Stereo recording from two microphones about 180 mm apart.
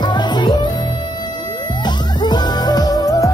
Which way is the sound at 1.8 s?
25° left (ahead or behind).